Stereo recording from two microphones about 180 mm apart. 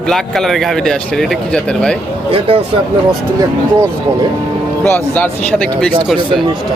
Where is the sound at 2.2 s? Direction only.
30° right (ahead or behind).